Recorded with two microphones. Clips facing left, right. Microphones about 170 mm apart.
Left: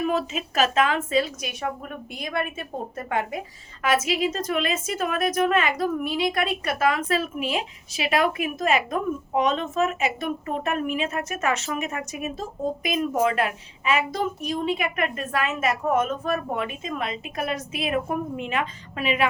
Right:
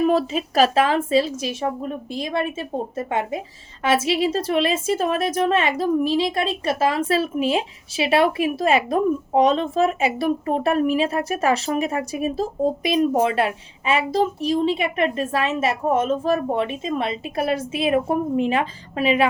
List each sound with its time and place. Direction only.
0.0 s a woman's voice: 35° right (ahead or behind)